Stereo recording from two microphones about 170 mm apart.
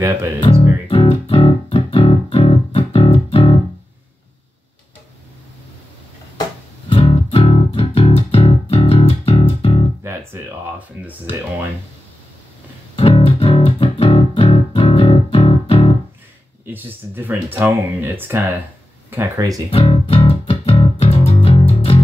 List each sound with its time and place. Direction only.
0.4 s music: 30° left (ahead or behind)
6.9 s music: 35° left (ahead or behind)
10.0 s a sound: 10° right (ahead or behind)
12.9 s music: 35° left (ahead or behind)
16.6 s a sound: 10° right (ahead or behind)
19.0 s speech: 15° right (ahead or behind)
19.7 s music: 35° left (ahead or behind)